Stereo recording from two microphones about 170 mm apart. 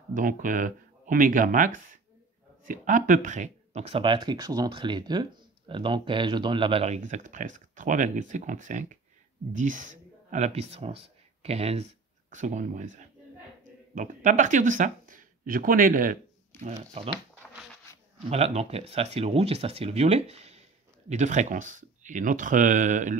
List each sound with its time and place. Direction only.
0.1 s speech: 50° right (ahead or behind)
16.5 s shuffling cards: 10° left (ahead or behind)
16.9 s speech: 35° right (ahead or behind)
18.3 s speech: 40° right (ahead or behind)